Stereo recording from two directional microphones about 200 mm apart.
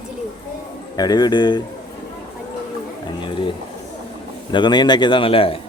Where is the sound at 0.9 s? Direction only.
20° left (ahead or behind).